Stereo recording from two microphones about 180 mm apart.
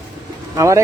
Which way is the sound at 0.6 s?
15° right (ahead or behind).